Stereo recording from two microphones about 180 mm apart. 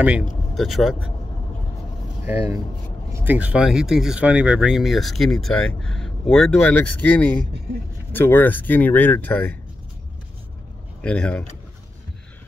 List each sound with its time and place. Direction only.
0.6 s speech: centre (ahead or behind)
2.2 s speech: 15° right (ahead or behind); by 9.5 s 10° left (ahead or behind)
11.0 s speech: 5° left (ahead or behind)